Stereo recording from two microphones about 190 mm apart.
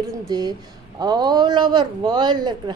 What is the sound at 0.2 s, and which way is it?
A woman's voice, 20° right (ahead or behind).